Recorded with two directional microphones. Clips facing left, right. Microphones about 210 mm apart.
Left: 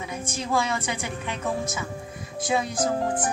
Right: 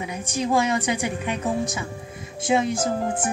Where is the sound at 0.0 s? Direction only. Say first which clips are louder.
Right 5 dB; 15° right (ahead or behind).